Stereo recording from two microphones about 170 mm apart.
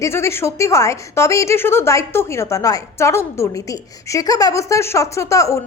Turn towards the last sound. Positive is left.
turn(degrees=20)  # may be behind; listen again after turning